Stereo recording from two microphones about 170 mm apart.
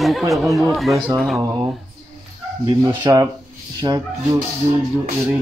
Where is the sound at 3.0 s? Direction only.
20° right (ahead or behind).